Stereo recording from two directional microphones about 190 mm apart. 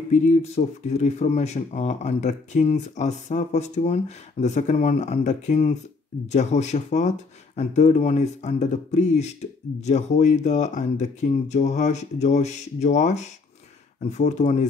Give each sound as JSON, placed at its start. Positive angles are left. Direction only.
{"t": 0.1, "sound": "speech", "side_deg": 35}